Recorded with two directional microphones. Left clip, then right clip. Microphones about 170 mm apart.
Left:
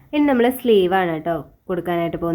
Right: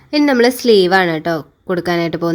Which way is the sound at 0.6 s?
70° right (ahead or behind).